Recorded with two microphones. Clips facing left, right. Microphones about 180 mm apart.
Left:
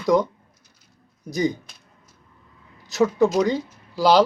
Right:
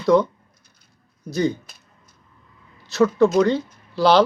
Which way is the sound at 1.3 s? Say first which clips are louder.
Right 1 dB; 15° left (ahead or behind).